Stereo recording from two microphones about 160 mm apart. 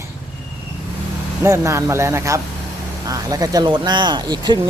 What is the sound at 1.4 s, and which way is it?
Speech, 20° right (ahead or behind).